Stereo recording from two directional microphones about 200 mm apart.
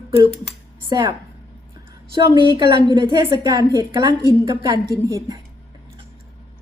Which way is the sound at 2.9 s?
20° right (ahead or behind).